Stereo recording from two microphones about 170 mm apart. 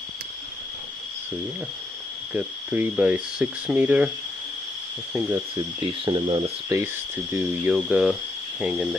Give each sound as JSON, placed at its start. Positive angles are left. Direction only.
{"t": 2.3, "sound": "speech", "side_deg": -10}
{"t": 5.6, "sound": "speech", "side_deg": -25}
{"t": 6.7, "sound": "speech", "side_deg": -20}
{"t": 7.3, "sound": "speech", "side_deg": -5}